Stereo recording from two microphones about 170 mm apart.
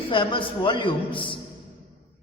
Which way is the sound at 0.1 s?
30° left (ahead or behind).